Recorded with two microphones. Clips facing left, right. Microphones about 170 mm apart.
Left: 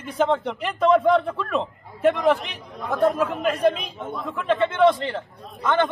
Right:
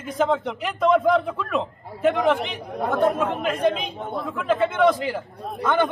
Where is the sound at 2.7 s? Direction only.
60° right (ahead or behind).